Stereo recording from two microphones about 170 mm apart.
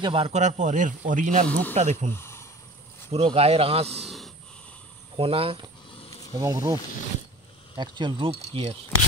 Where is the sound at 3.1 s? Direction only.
35° right (ahead or behind).